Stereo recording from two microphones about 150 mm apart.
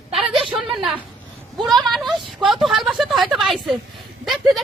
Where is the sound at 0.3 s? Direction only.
Centre (ahead or behind).